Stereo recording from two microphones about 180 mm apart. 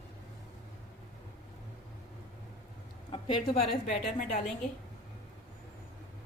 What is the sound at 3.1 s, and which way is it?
Speech, 30° left (ahead or behind).